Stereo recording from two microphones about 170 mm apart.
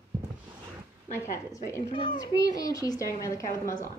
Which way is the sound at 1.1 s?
15° left (ahead or behind).